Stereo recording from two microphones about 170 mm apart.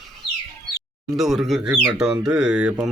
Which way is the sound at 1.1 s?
Centre (ahead or behind).